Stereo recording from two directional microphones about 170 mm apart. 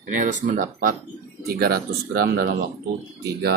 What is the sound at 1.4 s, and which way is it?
Speech, 65° right (ahead or behind).